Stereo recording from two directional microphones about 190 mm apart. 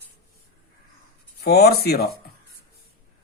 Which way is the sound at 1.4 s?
55° left (ahead or behind).